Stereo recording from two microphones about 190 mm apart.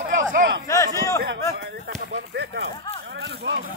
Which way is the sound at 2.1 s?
65° right (ahead or behind).